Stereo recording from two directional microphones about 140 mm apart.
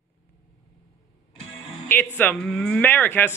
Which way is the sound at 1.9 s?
15° left (ahead or behind).